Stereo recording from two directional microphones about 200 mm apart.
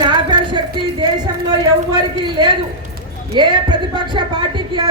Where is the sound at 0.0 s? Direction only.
25° right (ahead or behind).